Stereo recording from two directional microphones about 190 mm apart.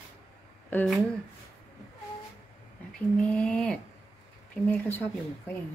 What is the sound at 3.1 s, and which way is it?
Speech, 5° left (ahead or behind).